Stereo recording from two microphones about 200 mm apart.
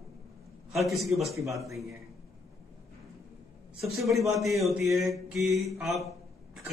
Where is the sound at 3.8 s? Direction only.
Centre (ahead or behind).